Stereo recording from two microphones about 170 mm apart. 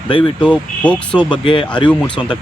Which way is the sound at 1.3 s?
30° left (ahead or behind).